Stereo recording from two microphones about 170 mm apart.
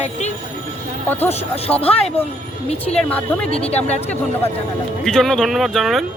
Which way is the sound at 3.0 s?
10° left (ahead or behind).